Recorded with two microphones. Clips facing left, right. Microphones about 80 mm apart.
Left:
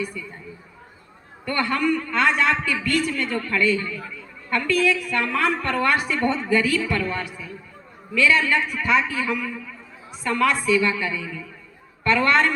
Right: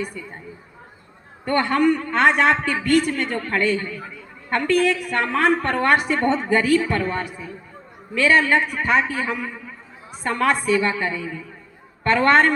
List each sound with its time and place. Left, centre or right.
0.0 s a man's voice: right
1.5 s a man's voice: right